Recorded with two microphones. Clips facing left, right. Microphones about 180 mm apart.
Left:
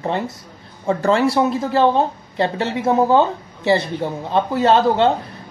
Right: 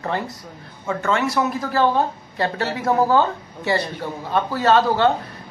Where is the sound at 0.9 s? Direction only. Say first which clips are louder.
Left 5 dB; 35° left (ahead or behind).